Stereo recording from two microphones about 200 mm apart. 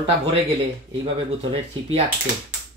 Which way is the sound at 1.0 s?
30° right (ahead or behind).